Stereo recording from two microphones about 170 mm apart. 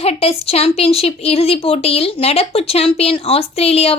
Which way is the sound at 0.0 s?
35° left (ahead or behind).